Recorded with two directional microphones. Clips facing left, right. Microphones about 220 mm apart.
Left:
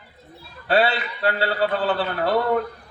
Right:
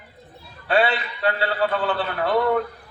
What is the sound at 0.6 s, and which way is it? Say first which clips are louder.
A man's voice: left 1 dB; 35° left (ahead or behind).